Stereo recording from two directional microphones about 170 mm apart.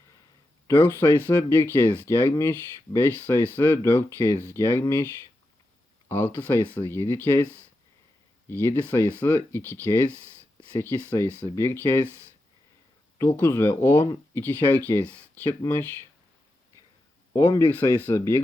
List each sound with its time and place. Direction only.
0.8 s speech: 10° left (ahead or behind)
6.1 s speech: 15° left (ahead or behind)
8.4 s speech: 15° left (ahead or behind)
13.3 s speech: 15° left (ahead or behind)
17.3 s speech: 15° left (ahead or behind)